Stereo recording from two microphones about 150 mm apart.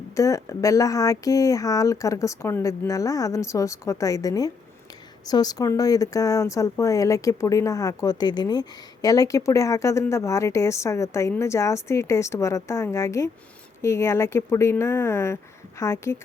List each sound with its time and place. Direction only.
0.2 s speech: 20° left (ahead or behind)